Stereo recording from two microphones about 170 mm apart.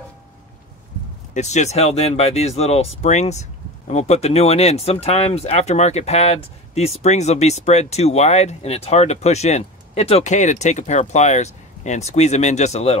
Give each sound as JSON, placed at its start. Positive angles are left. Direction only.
{"t": 1.3, "sound": "speech", "side_deg": 40}